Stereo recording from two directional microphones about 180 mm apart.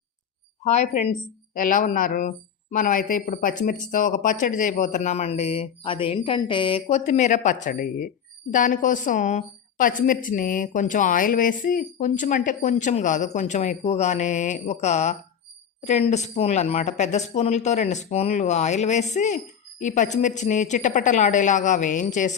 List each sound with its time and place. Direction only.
0.6 s a woman's voice: 40° left (ahead or behind)